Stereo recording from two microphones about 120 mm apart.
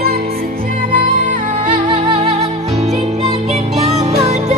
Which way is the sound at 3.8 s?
65° right (ahead or behind).